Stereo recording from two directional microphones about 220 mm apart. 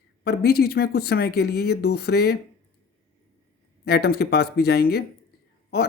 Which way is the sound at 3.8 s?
45° left (ahead or behind).